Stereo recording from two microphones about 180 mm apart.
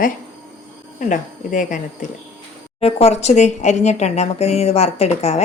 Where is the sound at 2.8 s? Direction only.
35° left (ahead or behind).